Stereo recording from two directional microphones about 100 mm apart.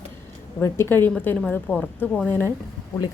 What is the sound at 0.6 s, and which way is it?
A woman's voice, 25° left (ahead or behind).